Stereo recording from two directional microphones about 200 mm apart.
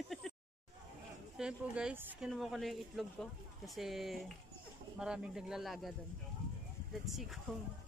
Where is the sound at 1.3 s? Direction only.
5° right (ahead or behind).